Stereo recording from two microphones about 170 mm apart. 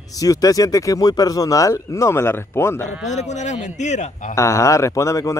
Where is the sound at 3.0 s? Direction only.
45° left (ahead or behind).